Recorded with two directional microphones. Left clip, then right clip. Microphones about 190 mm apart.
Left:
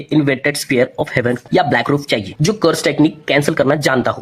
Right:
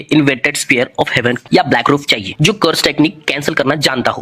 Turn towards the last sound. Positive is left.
turn(degrees=-15)  # may be behind; listen again after turning